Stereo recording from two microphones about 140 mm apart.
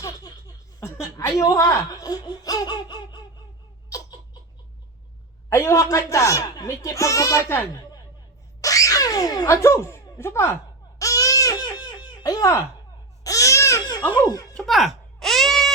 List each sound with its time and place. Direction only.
0.0 s laughter: 25° left (ahead or behind)
1.4 s speech: 25° left (ahead or behind)
3.8 s a sound: 25° left (ahead or behind)
5.5 s speech: 20° left (ahead or behind)
8.6 s speech: 25° left (ahead or behind)
11.0 s baby cry: 25° left (ahead or behind)
14.5 s a sound: centre (ahead or behind)